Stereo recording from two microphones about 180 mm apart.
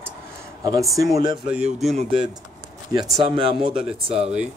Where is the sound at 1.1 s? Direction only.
25° right (ahead or behind).